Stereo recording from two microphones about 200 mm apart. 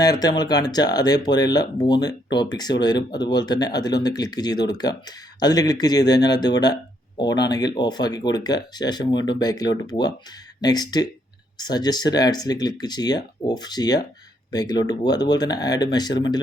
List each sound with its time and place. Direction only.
0.0 s speech: 20° left (ahead or behind)